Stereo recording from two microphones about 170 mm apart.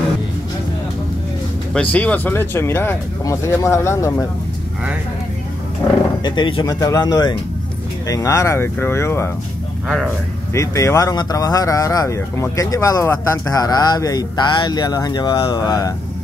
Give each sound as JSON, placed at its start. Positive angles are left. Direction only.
{"t": 1.7, "sound": "speech", "side_deg": 5}
{"t": 6.2, "sound": "speech", "side_deg": 25}
{"t": 10.5, "sound": "speech", "side_deg": 20}